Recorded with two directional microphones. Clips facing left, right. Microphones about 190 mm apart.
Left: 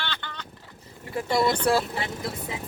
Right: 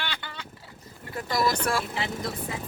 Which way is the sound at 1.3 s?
25° left (ahead or behind).